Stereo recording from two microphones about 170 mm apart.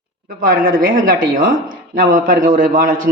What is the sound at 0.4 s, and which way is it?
A woman's voice, 55° right (ahead or behind).